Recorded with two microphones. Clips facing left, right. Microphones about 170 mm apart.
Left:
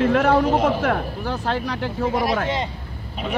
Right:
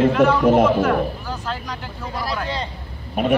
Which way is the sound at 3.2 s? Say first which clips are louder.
Right 8 dB; 55° right (ahead or behind).